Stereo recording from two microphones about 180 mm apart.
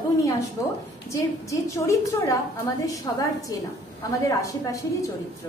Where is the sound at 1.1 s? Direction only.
15° left (ahead or behind).